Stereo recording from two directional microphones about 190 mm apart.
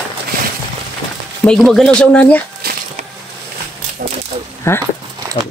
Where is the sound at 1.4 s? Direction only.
Centre (ahead or behind).